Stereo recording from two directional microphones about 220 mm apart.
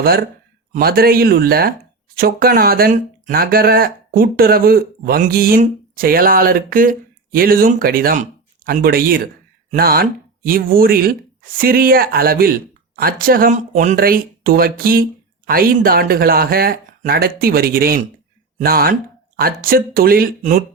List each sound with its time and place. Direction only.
0.0 s speech: 45° right (ahead or behind)